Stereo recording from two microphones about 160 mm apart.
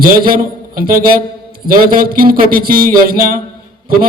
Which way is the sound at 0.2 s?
65° right (ahead or behind).